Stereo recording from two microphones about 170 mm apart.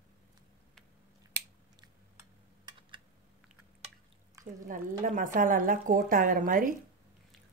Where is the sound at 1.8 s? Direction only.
25° right (ahead or behind).